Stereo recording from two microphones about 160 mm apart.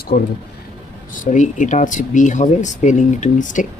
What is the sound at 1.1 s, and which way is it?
Speech, 50° left (ahead or behind).